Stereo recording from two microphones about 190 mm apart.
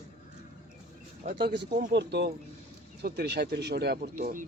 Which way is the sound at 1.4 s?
55° right (ahead or behind).